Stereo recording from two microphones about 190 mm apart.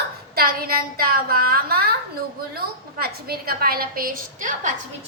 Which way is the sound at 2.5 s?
55° right (ahead or behind).